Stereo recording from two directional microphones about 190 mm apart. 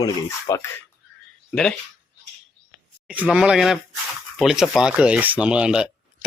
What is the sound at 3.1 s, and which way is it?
Speech, 5° right (ahead or behind).